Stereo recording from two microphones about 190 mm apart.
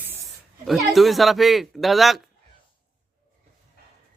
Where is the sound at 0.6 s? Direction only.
Centre (ahead or behind).